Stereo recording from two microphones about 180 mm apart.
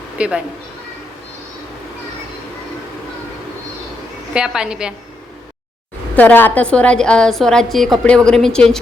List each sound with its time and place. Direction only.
0.2 s a woman's voice: 5° right (ahead or behind)
4.4 s a woman's voice: 5° right (ahead or behind)
6.1 s a woman's voice: 10° left (ahead or behind)